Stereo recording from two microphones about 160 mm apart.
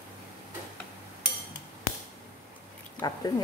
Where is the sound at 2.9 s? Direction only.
25° left (ahead or behind).